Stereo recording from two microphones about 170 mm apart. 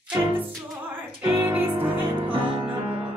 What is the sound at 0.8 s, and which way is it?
Music, 10° right (ahead or behind).